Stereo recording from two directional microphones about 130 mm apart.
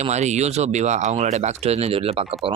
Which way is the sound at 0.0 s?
60° right (ahead or behind).